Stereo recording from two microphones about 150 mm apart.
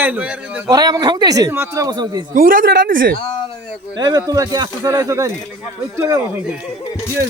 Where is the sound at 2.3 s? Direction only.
70° right (ahead or behind).